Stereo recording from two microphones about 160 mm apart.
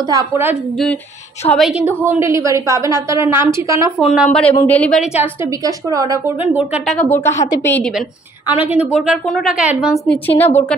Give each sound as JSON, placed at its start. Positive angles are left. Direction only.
{"t": 0.1, "sound": "a woman's voice", "side_deg": -15}
{"t": 1.5, "sound": "a woman's voice", "side_deg": 0}
{"t": 4.0, "sound": "a woman's voice", "side_deg": -5}
{"t": 4.3, "sound": "a woman's voice", "side_deg": 5}
{"t": 5.9, "sound": "a woman's voice", "side_deg": -20}
{"t": 6.4, "sound": "a woman's voice", "side_deg": -10}
{"t": 6.9, "sound": "a woman's voice", "side_deg": 10}
{"t": 8.5, "sound": "a woman's voice", "side_deg": -10}
{"t": 10.0, "sound": "a woman's voice", "side_deg": 10}